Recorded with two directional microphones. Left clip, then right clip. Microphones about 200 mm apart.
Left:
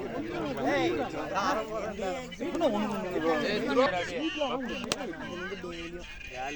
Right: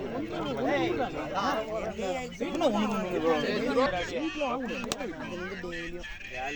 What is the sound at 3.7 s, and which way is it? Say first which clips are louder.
Speech: left 2 dB; 35° left (ahead or behind).